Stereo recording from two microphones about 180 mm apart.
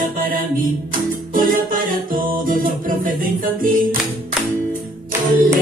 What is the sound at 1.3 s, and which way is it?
Music, 50° right (ahead or behind).